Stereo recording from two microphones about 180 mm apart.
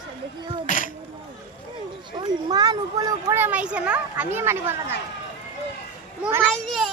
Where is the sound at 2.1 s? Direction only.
25° right (ahead or behind).